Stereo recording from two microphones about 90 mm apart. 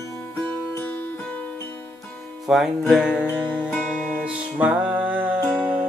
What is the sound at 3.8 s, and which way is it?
Music, 10° right (ahead or behind).